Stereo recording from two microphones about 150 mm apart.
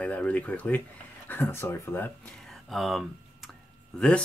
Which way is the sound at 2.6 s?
Centre (ahead or behind).